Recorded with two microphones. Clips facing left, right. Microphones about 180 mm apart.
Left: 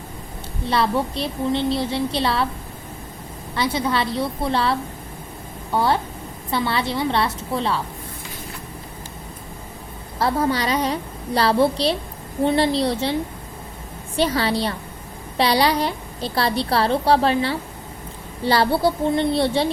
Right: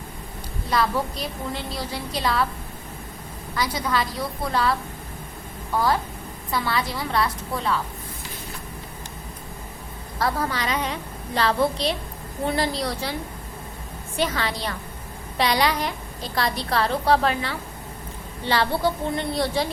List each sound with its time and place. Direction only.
0.7 s a woman's voice: 30° left (ahead or behind)
3.5 s a woman's voice: 25° left (ahead or behind)
10.2 s a woman's voice: 25° left (ahead or behind)
14.2 s a woman's voice: 30° left (ahead or behind)